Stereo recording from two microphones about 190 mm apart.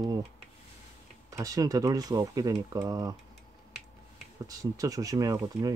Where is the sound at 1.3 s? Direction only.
20° right (ahead or behind).